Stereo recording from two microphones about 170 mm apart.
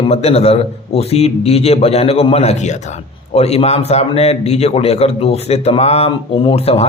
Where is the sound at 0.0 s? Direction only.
40° left (ahead or behind).